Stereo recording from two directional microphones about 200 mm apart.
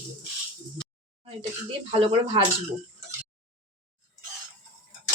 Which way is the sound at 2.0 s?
25° right (ahead or behind).